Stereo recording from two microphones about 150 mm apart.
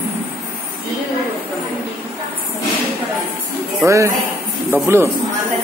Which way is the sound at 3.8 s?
20° right (ahead or behind).